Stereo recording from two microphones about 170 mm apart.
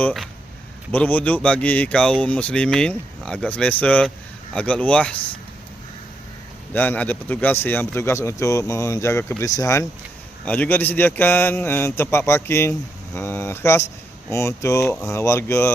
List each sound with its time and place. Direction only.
0.0 s speech: centre (ahead or behind)
6.7 s speech: 10° left (ahead or behind)